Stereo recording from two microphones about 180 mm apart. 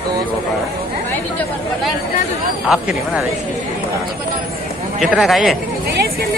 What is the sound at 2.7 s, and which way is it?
Speech, 5° right (ahead or behind).